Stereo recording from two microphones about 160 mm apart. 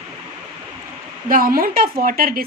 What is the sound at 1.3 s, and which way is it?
A woman's voice, 65° right (ahead or behind).